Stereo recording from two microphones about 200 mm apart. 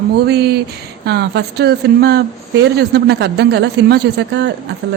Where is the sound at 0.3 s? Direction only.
55° right (ahead or behind).